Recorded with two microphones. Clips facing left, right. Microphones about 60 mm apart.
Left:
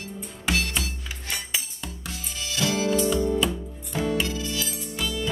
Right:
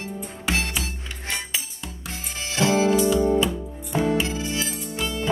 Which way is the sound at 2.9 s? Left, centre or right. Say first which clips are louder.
Right 4 dB; centre.